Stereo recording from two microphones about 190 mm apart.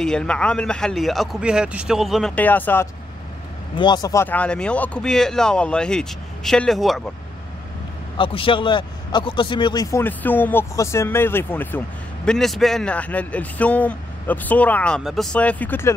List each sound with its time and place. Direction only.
0.0 s speech: 5° left (ahead or behind)
3.7 s speech: 25° left (ahead or behind); by 7.0 s centre (ahead or behind)
8.2 s a man's voice: 25° left (ahead or behind); by 15.9 s 10° left (ahead or behind)